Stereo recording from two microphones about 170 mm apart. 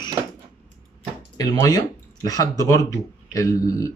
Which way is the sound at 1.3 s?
20° left (ahead or behind).